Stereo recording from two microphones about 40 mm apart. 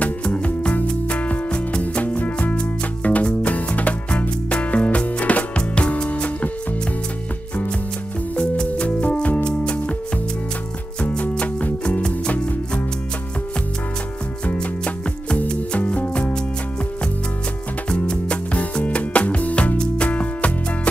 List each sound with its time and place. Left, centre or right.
1.1 s music: left
8.4 s music: left
11.1 s music: left
12.0 s music: left
15.8 s music: left
18.0 s music: left